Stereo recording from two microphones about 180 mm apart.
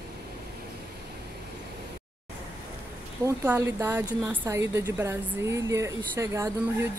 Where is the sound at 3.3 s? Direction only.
15° right (ahead or behind).